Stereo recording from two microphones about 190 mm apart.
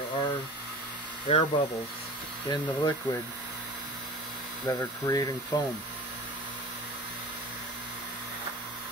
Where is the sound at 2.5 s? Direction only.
15° left (ahead or behind).